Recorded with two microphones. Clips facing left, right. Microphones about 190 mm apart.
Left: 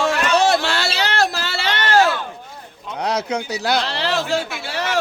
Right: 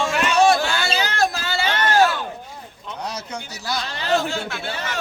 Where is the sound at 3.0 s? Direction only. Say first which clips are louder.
Left 9 dB; 70° left (ahead or behind).